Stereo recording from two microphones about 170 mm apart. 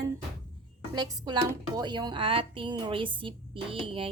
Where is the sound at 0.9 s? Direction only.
25° right (ahead or behind).